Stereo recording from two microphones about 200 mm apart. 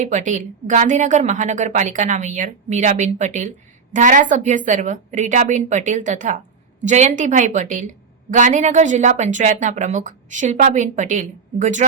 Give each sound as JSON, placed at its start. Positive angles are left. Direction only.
{"t": 0.0, "sound": "a woman's voice", "side_deg": -40}